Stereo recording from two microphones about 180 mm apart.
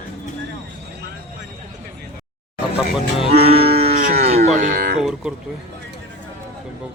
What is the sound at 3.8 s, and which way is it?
Moo, 45° right (ahead or behind).